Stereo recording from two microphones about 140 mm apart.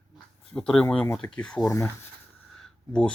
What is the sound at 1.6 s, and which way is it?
Speech, 25° left (ahead or behind).